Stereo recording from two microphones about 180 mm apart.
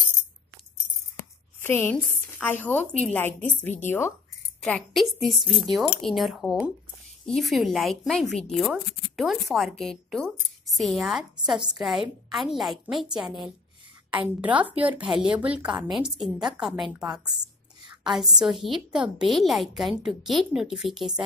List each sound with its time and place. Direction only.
1.8 s a woman's voice: 10° left (ahead or behind)
17.1 s a woman's voice: 25° right (ahead or behind)
18.1 s a woman's voice: centre (ahead or behind)